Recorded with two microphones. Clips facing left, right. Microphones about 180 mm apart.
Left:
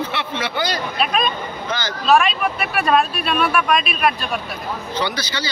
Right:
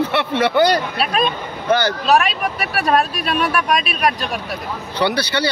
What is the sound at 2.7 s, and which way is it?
Speech, 40° right (ahead or behind).